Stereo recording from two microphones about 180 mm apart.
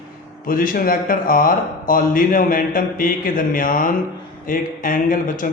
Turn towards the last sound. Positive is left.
turn(degrees=50)  # may be behind; listen again after turning